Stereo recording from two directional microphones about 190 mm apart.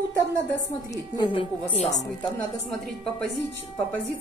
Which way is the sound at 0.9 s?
25° left (ahead or behind).